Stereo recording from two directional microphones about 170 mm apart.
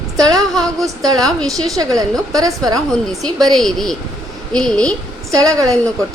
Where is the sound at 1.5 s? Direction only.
20° right (ahead or behind).